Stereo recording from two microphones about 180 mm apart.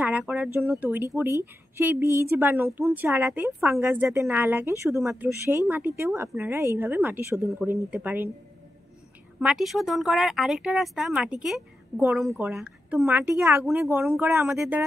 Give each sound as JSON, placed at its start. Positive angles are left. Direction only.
{"t": 0.0, "sound": "a woman's voice", "side_deg": -10}
{"t": 9.4, "sound": "a woman's voice", "side_deg": -5}
{"t": 14.0, "sound": "speech", "side_deg": 0}
{"t": 14.3, "sound": "a woman's voice", "side_deg": -15}